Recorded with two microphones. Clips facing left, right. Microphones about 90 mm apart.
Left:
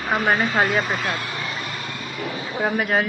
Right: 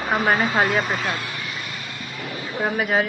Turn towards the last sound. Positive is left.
turn(degrees=0)  # may be behind; listen again after turning